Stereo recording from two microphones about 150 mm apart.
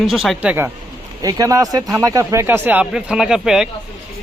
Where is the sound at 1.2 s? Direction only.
25° right (ahead or behind).